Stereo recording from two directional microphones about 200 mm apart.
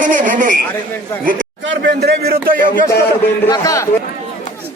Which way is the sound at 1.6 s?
60° right (ahead or behind).